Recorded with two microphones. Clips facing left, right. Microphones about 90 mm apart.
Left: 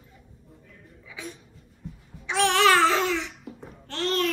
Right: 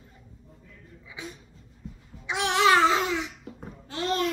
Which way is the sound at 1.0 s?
20° right (ahead or behind).